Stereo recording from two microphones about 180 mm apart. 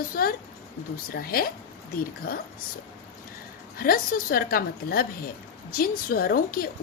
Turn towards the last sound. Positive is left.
turn(degrees=55)  # may be behind; listen again after turning